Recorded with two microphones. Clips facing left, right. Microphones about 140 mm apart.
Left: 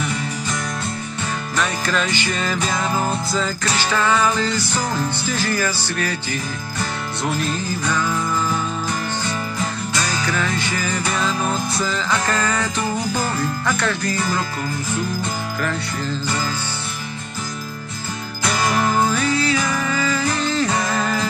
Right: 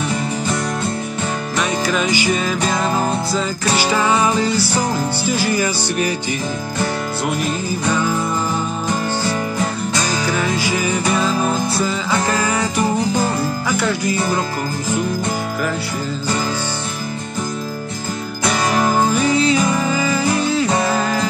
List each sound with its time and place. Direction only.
1.6 s music: 10° right (ahead or behind)
10.2 s music: 10° right (ahead or behind)
18.4 s music: 20° right (ahead or behind); by 21.3 s centre (ahead or behind)